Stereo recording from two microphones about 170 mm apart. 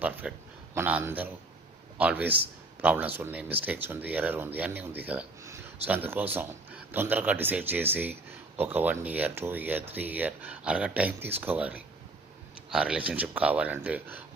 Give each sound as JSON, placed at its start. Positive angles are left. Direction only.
{"t": 0.0, "sound": "speech", "side_deg": -10}